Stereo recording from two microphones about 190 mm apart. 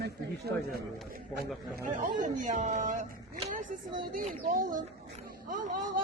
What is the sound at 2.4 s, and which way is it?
Speech, 40° right (ahead or behind).